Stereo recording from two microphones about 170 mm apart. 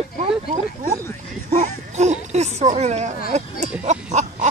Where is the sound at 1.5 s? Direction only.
40° right (ahead or behind).